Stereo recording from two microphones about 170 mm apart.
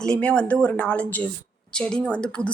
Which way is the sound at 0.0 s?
5° left (ahead or behind).